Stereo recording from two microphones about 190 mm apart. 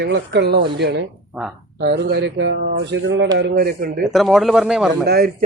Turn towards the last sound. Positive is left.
turn(degrees=-55)  # may be behind; listen again after turning